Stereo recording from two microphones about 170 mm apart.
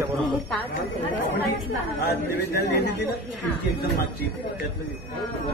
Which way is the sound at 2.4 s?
75° left (ahead or behind).